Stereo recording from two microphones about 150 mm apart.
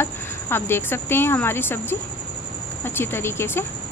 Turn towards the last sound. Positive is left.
turn(degrees=15)  # may be behind; listen again after turning